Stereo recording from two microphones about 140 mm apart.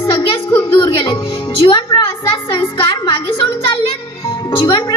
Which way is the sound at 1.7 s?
35° left (ahead or behind).